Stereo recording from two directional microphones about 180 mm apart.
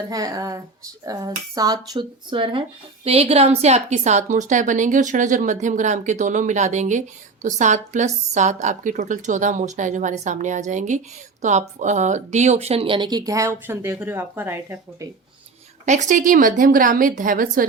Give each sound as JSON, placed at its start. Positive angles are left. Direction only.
{"t": 0.1, "sound": "speech", "side_deg": -20}
{"t": 15.9, "sound": "speech", "side_deg": -40}